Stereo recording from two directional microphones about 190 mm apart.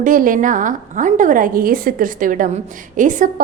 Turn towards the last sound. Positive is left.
turn(degrees=-45)  # may be behind; listen again after turning